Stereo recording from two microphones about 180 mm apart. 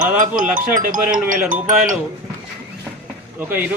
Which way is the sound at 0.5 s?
50° right (ahead or behind).